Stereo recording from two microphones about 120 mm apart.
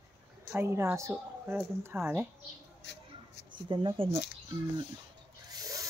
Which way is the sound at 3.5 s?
40° right (ahead or behind).